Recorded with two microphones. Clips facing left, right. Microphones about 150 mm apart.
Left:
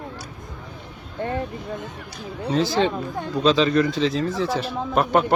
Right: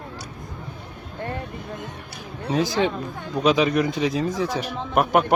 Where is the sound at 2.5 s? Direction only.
15° right (ahead or behind).